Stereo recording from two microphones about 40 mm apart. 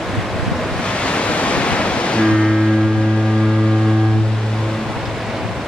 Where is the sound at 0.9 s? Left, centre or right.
Left.